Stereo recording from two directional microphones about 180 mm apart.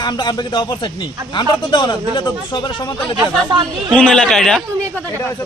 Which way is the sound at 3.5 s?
25° right (ahead or behind).